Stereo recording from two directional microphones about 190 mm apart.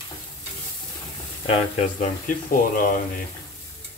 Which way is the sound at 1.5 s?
40° left (ahead or behind).